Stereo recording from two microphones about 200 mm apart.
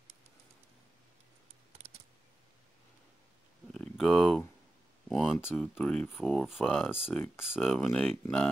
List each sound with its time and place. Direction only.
1.8 s computer keyboard: 30° right (ahead or behind)
3.7 s speech: 5° left (ahead or behind)